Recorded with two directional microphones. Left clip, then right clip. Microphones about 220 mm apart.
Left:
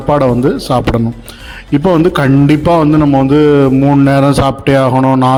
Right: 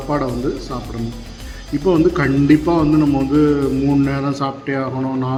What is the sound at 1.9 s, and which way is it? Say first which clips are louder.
Speech: left 5 dB; 45° left (ahead or behind).